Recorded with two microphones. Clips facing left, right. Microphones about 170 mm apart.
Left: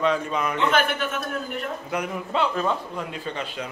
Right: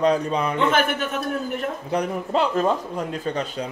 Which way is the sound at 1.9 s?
35° right (ahead or behind).